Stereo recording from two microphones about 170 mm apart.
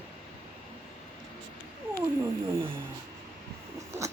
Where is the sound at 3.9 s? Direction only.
20° right (ahead or behind).